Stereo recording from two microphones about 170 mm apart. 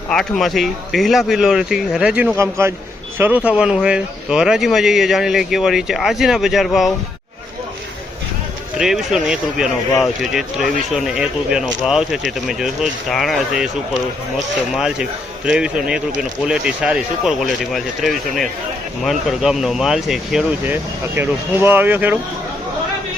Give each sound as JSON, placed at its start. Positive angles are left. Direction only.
{"t": 0.1, "sound": "speech", "side_deg": 0}
{"t": 2.4, "sound": "speech", "side_deg": -15}
{"t": 8.8, "sound": "speech", "side_deg": -5}
{"t": 14.8, "sound": "speech", "side_deg": -5}